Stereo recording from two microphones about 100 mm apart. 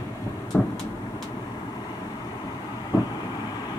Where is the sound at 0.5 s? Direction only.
20° left (ahead or behind).